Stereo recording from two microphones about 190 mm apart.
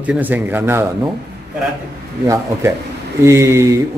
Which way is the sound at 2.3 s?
15° right (ahead or behind).